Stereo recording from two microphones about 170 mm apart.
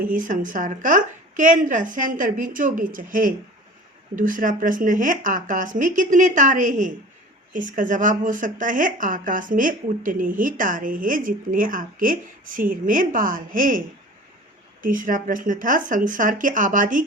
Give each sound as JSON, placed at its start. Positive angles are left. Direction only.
{"t": 0.0, "sound": "speech", "side_deg": -50}